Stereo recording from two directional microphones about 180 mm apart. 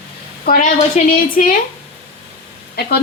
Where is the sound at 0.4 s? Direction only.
45° left (ahead or behind).